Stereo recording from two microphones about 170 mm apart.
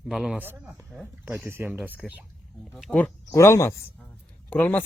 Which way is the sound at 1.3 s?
15° right (ahead or behind).